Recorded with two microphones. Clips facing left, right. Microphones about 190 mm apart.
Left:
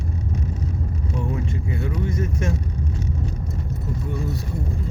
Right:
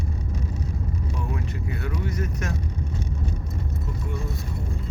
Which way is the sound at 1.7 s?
25° left (ahead or behind).